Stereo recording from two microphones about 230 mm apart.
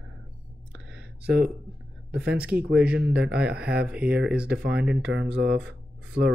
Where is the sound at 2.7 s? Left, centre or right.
Centre.